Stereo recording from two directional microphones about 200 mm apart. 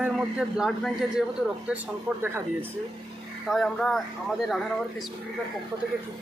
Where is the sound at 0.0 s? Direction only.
5° right (ahead or behind).